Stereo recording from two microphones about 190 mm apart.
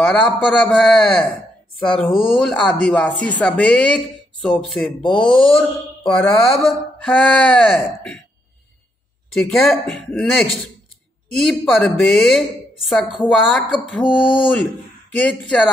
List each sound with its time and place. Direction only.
0.0 s speech: 5° left (ahead or behind)
9.3 s speech: 5° left (ahead or behind)
12.0 s speech: 5° left (ahead or behind)
14.0 s speech: 25° left (ahead or behind)
15.2 s speech: 5° left (ahead or behind)